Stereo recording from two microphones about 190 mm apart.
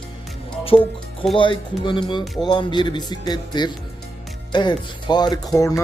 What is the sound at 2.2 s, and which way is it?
Speech, centre (ahead or behind).